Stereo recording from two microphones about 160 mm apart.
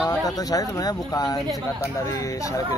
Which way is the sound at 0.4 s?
25° left (ahead or behind).